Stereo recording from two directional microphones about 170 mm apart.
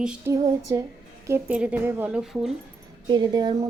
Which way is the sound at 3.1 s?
25° right (ahead or behind).